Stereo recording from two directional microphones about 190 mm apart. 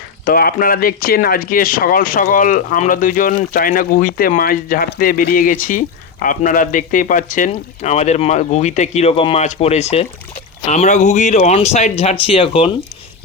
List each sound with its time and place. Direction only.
0.3 s speech: 50° left (ahead or behind); by 12.7 s 30° left (ahead or behind)